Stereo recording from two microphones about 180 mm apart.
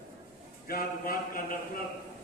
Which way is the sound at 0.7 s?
55° left (ahead or behind).